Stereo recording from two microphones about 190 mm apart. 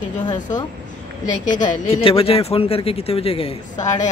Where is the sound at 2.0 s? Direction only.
30° left (ahead or behind).